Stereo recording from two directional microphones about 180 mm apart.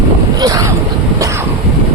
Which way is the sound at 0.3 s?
20° right (ahead or behind).